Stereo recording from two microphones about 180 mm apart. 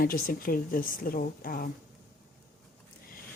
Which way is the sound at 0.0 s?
50° left (ahead or behind).